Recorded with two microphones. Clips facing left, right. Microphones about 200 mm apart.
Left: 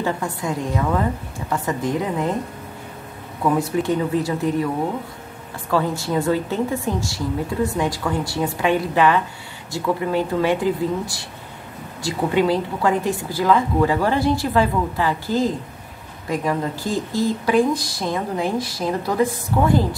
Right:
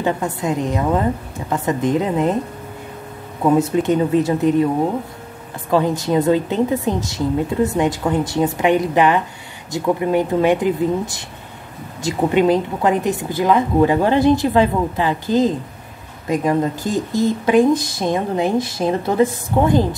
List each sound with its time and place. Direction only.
0.0 s speech: 20° right (ahead or behind)
3.4 s speech: 20° right (ahead or behind)
5.7 s speech: 20° right (ahead or behind)